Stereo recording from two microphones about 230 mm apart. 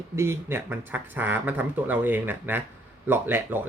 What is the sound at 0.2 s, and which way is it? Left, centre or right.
Speech, centre.